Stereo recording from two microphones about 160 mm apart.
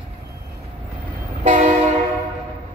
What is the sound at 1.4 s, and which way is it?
Train, 50° right (ahead or behind).